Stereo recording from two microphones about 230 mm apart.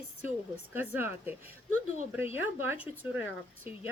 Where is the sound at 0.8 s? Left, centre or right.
Centre.